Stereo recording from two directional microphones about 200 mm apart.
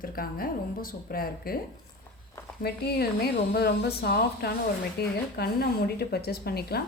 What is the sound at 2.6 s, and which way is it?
A woman's voice, 50° left (ahead or behind).